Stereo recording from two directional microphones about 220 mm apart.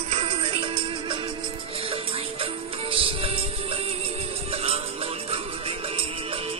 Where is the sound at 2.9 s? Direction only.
25° right (ahead or behind).